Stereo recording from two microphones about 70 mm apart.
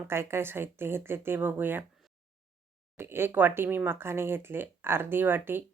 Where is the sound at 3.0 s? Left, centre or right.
Right.